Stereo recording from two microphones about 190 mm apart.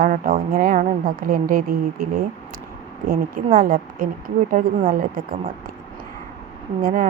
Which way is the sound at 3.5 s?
50° right (ahead or behind).